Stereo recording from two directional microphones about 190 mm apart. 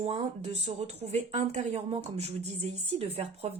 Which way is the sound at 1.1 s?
35° right (ahead or behind).